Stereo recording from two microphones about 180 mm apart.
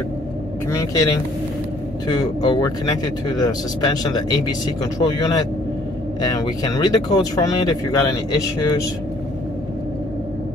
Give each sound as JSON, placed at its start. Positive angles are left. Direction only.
{"t": 0.7, "sound": "speech", "side_deg": 15}
{"t": 2.0, "sound": "speech", "side_deg": 25}